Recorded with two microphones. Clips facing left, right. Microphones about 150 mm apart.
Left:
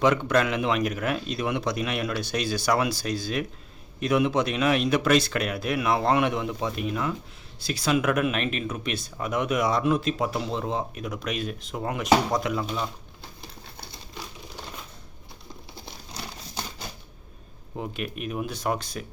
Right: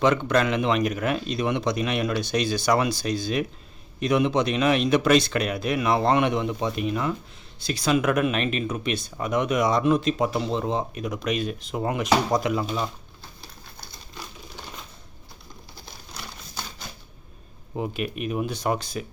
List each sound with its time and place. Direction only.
0.0 s speech: 10° left (ahead or behind)
13.4 s a sound: 30° left (ahead or behind)
17.7 s speech: 5° right (ahead or behind)